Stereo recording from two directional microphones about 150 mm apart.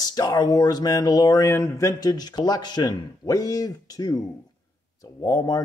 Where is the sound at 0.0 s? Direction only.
25° left (ahead or behind).